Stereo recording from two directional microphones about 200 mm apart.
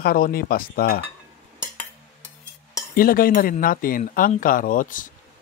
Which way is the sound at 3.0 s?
45° left (ahead or behind).